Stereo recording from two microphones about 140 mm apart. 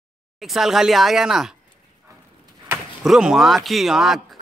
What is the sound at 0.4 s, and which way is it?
Speech, centre (ahead or behind).